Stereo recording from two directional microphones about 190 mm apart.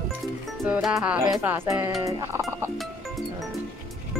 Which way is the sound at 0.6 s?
5° right (ahead or behind).